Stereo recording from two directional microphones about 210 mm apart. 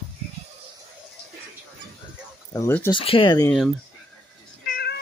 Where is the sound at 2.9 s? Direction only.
25° left (ahead or behind).